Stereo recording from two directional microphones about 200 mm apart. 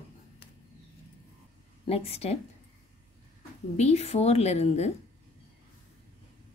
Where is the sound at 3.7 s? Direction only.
35° left (ahead or behind).